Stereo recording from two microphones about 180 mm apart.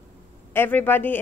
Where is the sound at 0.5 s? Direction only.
10° left (ahead or behind).